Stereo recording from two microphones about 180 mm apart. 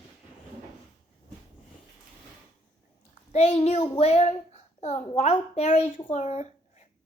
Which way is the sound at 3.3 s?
35° left (ahead or behind).